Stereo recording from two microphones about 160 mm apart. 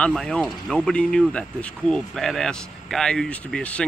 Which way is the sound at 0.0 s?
5° left (ahead or behind).